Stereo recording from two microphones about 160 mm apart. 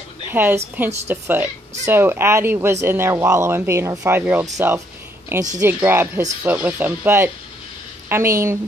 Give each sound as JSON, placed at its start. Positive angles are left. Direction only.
{"t": 0.3, "sound": "a woman's voice", "side_deg": -10}